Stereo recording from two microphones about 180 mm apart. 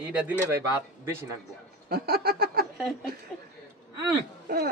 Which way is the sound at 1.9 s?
60° right (ahead or behind).